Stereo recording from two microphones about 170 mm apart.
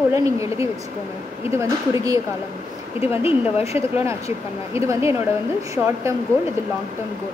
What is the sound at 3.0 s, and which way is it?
Speech, 35° left (ahead or behind).